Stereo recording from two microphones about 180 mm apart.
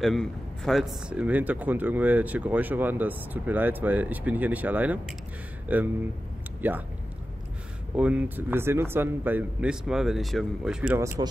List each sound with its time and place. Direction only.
0.0 s speech: centre (ahead or behind)
7.9 s speech: 5° right (ahead or behind)